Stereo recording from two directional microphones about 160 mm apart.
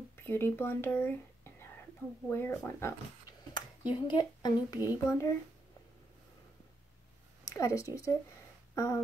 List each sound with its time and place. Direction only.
0.1 s speech: 15° left (ahead or behind)
7.4 s speech: 20° left (ahead or behind)